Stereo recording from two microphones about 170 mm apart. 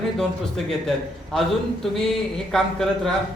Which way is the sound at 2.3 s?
5° left (ahead or behind).